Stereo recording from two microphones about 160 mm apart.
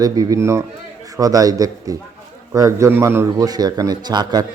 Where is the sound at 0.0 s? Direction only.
25° right (ahead or behind).